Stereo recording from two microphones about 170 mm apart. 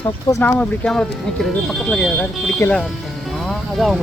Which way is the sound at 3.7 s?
Centre (ahead or behind).